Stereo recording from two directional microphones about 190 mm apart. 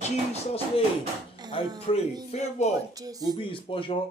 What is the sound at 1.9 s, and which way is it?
Speech, 30° left (ahead or behind).